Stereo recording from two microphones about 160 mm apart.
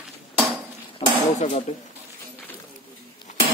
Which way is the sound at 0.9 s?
45° left (ahead or behind).